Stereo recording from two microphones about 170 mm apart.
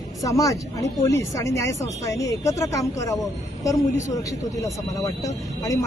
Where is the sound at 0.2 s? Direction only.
20° left (ahead or behind).